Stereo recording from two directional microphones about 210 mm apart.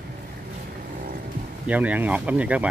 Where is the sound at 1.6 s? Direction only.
5° right (ahead or behind).